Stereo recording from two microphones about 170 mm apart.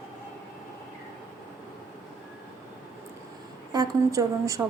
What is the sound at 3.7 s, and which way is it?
Speech, 20° right (ahead or behind).